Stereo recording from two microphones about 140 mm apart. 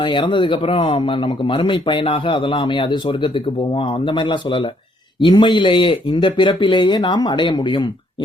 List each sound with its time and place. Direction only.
0.0 s speech: 35° left (ahead or behind)